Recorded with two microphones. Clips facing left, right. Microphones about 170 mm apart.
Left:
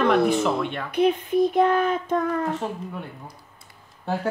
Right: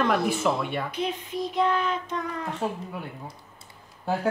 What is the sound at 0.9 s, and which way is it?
Speech, 55° left (ahead or behind).